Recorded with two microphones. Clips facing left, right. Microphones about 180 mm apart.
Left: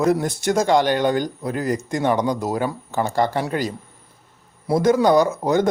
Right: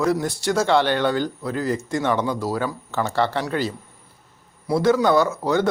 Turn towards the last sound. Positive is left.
turn(degrees=20)  # may be behind; listen again after turning